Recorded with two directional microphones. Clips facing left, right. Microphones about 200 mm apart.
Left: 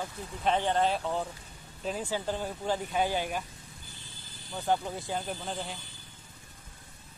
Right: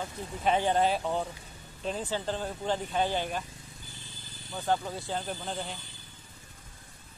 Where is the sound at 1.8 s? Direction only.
5° left (ahead or behind).